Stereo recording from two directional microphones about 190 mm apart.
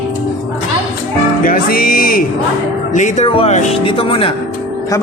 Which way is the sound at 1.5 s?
50° left (ahead or behind).